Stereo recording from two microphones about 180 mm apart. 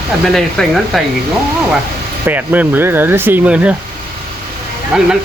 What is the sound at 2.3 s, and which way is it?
Speech, 10° right (ahead or behind).